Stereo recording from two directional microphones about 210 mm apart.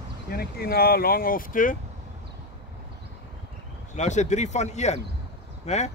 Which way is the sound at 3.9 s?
35° left (ahead or behind).